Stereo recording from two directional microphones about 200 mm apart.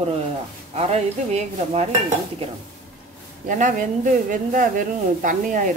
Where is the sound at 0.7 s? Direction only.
35° right (ahead or behind).